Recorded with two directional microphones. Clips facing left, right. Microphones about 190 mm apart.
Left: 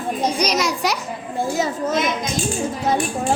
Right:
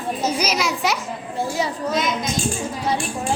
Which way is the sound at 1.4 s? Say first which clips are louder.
Left 2 dB; 45° left (ahead or behind).